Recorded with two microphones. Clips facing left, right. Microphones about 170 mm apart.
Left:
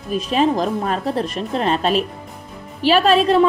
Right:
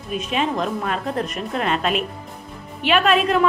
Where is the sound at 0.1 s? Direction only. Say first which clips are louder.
Left 5 dB; 35° left (ahead or behind).